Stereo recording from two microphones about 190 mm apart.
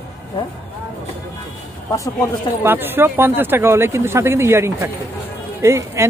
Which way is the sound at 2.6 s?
10° right (ahead or behind).